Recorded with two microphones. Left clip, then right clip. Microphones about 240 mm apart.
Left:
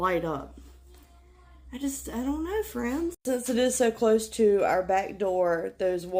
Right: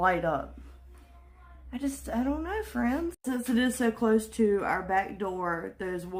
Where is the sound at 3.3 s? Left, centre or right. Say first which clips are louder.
Left 4 dB; right.